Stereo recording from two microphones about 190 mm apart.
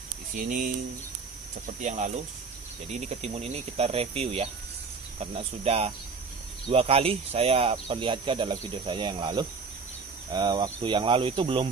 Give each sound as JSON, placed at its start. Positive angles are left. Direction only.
{"t": 0.4, "sound": "speech", "side_deg": -45}
{"t": 1.8, "sound": "cricket", "side_deg": -40}
{"t": 6.7, "sound": "speech", "side_deg": -30}